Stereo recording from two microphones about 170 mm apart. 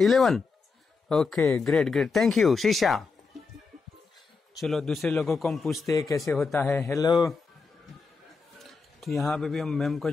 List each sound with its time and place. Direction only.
0.0 s speech: centre (ahead or behind)
4.6 s speech: centre (ahead or behind)
5.9 s speech: 20° left (ahead or behind)
6.6 s speech: 5° left (ahead or behind)
6.9 s speech: 20° left (ahead or behind)
8.5 s a man's voice: centre (ahead or behind)